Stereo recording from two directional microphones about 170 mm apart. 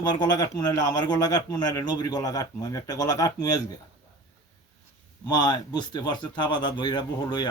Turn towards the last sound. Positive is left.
turn(degrees=25)  # may be behind; listen again after turning